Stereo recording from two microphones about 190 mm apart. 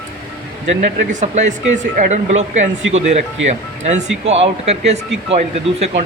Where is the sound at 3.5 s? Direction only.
40° right (ahead or behind).